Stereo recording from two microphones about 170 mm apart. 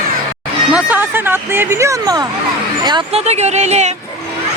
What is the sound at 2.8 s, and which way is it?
Speech, 25° right (ahead or behind).